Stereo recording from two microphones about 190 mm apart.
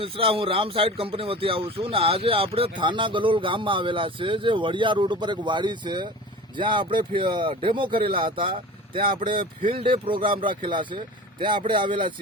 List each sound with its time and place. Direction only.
0.0 s speech: 30° right (ahead or behind)